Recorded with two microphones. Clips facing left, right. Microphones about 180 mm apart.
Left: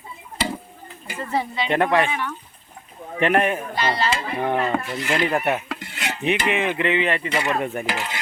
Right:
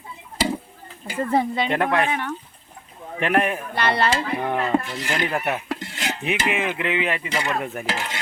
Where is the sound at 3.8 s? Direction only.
60° right (ahead or behind).